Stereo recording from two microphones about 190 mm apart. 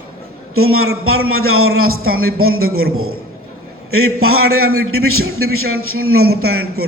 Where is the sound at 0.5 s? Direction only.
90° right.